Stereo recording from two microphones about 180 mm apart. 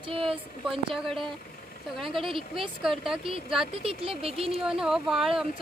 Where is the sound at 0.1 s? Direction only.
30° right (ahead or behind).